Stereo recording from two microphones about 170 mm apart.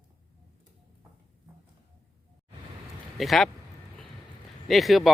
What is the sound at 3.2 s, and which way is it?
Speech, centre (ahead or behind).